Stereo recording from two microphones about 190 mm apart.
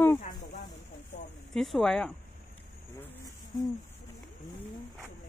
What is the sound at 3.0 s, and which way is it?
Cricket, 15° left (ahead or behind).